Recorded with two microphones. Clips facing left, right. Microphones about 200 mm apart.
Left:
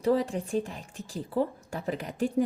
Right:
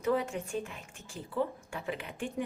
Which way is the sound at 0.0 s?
35° left (ahead or behind).